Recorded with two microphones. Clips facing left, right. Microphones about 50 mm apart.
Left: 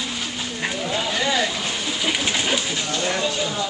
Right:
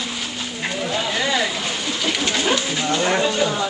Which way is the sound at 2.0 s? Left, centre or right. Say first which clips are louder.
Right 1 dB; centre.